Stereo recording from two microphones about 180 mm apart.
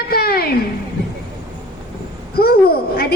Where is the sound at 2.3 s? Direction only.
60° left (ahead or behind).